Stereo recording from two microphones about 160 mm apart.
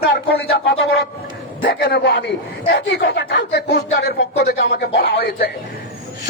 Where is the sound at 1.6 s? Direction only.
70° left (ahead or behind).